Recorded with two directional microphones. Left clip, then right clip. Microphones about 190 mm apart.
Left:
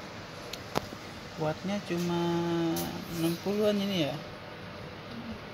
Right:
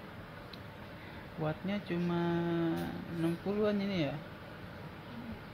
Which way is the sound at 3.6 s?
Centre (ahead or behind).